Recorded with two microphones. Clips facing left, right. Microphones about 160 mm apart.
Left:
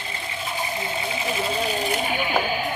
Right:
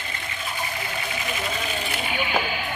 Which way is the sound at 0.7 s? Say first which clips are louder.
Left 3 dB; 25° left (ahead or behind).